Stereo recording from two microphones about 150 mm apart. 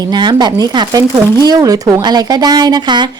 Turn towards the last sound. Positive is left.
turn(degrees=-30)  # may be behind; listen again after turning